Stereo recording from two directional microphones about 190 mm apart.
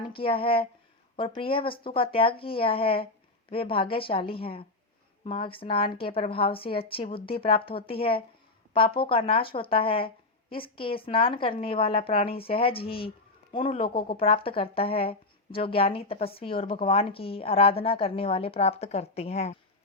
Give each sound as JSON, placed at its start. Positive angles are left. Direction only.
{"t": 0.0, "sound": "speech", "side_deg": 25}